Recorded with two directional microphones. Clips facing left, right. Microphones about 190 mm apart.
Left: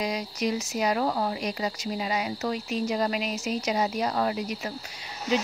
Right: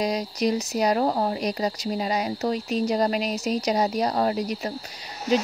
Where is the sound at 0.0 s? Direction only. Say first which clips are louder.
Right 4 dB; 35° right (ahead or behind).